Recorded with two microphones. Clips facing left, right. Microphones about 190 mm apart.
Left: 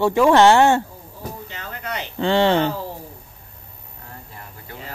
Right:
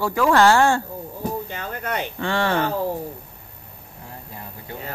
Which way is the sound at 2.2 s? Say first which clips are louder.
Left 6 dB; 25° left (ahead or behind).